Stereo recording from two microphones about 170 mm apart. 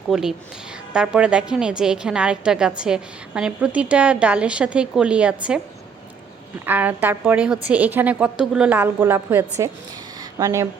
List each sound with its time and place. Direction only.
0.1 s a woman's voice: centre (ahead or behind)
6.7 s a woman's voice: 10° right (ahead or behind)
10.2 s a sound: 20° right (ahead or behind)